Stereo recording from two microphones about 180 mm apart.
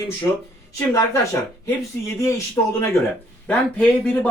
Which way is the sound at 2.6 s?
20° left (ahead or behind).